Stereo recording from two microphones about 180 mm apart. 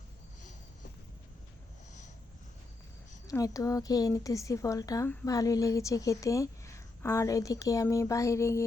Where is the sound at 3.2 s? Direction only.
20° left (ahead or behind).